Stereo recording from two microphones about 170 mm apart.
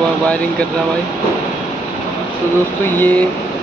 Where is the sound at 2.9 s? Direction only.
10° left (ahead or behind).